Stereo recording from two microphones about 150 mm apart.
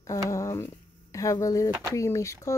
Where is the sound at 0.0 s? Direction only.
20° left (ahead or behind).